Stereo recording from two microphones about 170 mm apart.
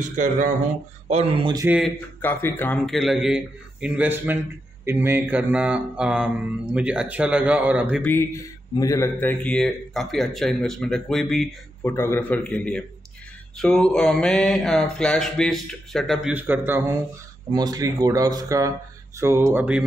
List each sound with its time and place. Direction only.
0.0 s speech: 45° right (ahead or behind); by 1.7 s 25° right (ahead or behind)
1.7 s a man's voice: centre (ahead or behind)
2.2 s a man's voice: 10° left (ahead or behind); by 8.0 s 10° right (ahead or behind)
8.0 s a man's voice: 15° left (ahead or behind)
11.8 s a man's voice: 15° left (ahead or behind)
16.3 s speech: 10° right (ahead or behind)